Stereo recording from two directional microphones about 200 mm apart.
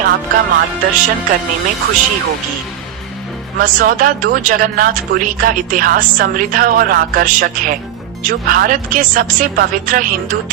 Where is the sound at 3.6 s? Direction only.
45° right (ahead or behind).